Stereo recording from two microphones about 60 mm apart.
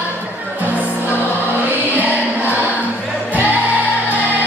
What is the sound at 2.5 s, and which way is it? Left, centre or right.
Music, right.